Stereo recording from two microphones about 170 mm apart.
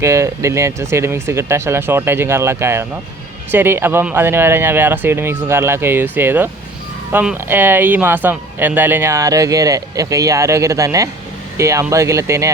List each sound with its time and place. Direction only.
0.0 s speech: 15° right (ahead or behind)